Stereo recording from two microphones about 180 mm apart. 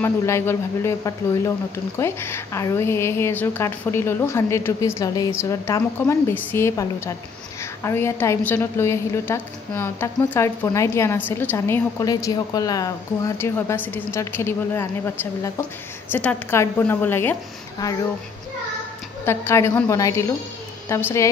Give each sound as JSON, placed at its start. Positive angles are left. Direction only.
{"t": 0.0, "sound": "a woman's voice", "side_deg": 15}
{"t": 19.2, "sound": "a woman's voice", "side_deg": 15}